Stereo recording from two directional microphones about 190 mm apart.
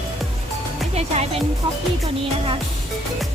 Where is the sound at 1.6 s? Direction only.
25° right (ahead or behind).